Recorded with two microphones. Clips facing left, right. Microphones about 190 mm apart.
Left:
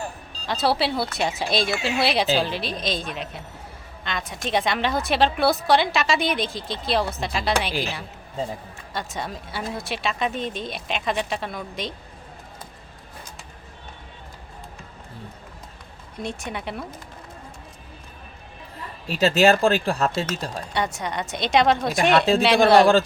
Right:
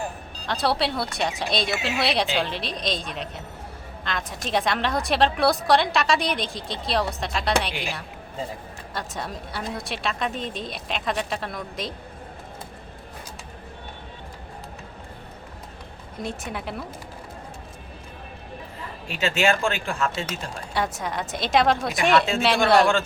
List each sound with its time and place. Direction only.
0.4 s a woman's voice: centre (ahead or behind)
8.9 s a woman's voice: centre (ahead or behind)
16.2 s a woman's voice: centre (ahead or behind)
19.0 s speech: 40° left (ahead or behind)
20.7 s a woman's voice: centre (ahead or behind)